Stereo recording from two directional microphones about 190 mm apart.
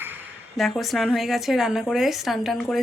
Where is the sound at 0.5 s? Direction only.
Centre (ahead or behind).